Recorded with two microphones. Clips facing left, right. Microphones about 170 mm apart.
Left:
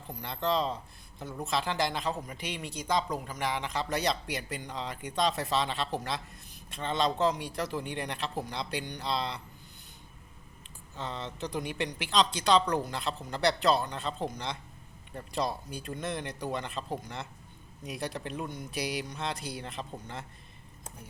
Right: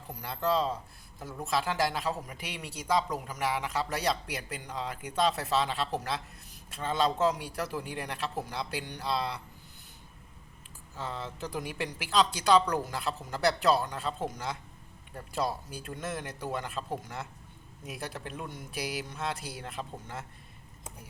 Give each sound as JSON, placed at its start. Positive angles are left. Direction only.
{"t": 0.1, "sound": "speech", "side_deg": -5}
{"t": 10.9, "sound": "speech", "side_deg": -5}